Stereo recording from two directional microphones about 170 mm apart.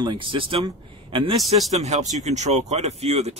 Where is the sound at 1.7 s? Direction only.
45° right (ahead or behind).